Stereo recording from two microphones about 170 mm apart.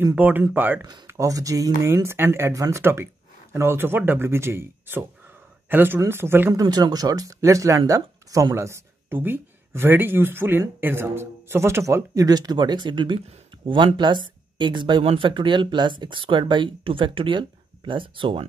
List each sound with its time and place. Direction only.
0.0 s speech: 10° right (ahead or behind); by 18.5 s 30° right (ahead or behind)